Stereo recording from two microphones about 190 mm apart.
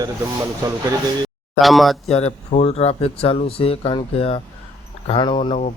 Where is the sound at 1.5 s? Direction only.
Centre (ahead or behind).